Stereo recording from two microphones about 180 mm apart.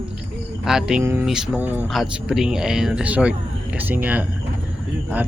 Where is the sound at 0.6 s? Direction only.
5° right (ahead or behind).